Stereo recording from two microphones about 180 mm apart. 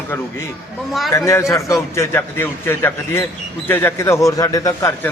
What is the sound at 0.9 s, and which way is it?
Speech, centre (ahead or behind).